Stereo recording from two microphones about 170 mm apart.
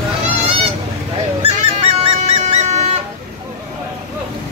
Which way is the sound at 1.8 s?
35° right (ahead or behind).